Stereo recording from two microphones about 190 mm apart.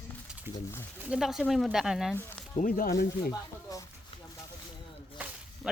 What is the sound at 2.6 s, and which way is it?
Speech, 50° left (ahead or behind).